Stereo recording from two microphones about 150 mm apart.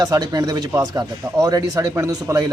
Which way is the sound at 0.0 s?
25° right (ahead or behind).